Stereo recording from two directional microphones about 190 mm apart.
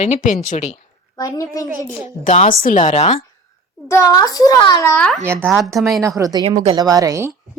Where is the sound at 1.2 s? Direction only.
20° left (ahead or behind).